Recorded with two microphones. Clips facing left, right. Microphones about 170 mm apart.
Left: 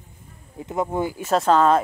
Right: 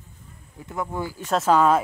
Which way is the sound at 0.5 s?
20° left (ahead or behind).